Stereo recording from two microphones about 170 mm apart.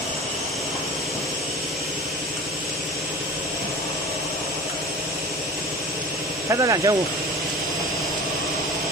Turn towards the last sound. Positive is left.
turn(degrees=-20)  # may be behind; listen again after turning